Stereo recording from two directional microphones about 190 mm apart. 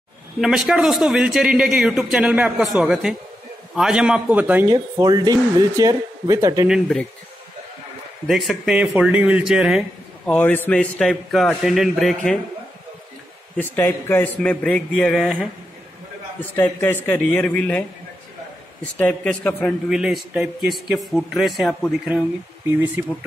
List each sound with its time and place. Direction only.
0.4 s speech: centre (ahead or behind)
4.6 s speech: 20° right (ahead or behind)
6.7 s speech: 5° left (ahead or behind)
8.3 s speech: centre (ahead or behind)
13.6 s a man's voice: 10° left (ahead or behind)
16.3 s a man's voice: 10° left (ahead or behind); by 23.0 s 10° right (ahead or behind)